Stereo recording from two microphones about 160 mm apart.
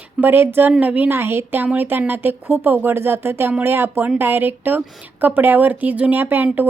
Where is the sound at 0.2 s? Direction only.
15° right (ahead or behind).